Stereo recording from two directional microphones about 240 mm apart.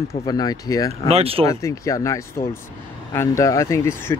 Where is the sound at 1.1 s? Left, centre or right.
Right.